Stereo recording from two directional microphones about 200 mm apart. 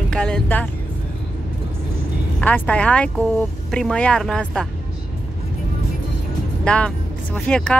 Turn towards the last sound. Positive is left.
turn(degrees=5)  # may be behind; listen again after turning